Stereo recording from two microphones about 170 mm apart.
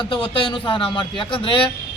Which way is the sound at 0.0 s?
30° left (ahead or behind).